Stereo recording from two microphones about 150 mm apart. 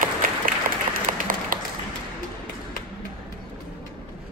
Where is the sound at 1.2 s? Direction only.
65° right (ahead or behind).